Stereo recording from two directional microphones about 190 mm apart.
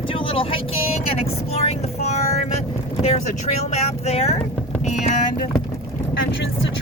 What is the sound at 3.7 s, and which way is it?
Speech, 35° left (ahead or behind).